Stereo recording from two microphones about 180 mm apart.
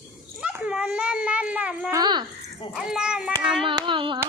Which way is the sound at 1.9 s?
20° right (ahead or behind).